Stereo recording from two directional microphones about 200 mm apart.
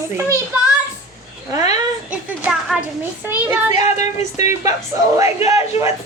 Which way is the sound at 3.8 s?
35° left (ahead or behind).